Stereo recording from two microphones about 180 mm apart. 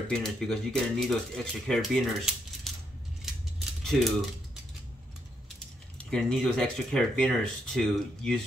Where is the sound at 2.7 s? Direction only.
Centre (ahead or behind).